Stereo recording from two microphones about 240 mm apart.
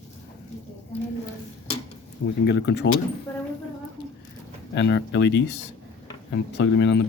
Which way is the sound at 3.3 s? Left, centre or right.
Centre.